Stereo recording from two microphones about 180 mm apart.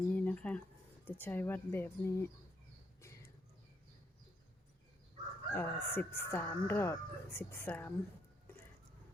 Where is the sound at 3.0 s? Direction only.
15° left (ahead or behind).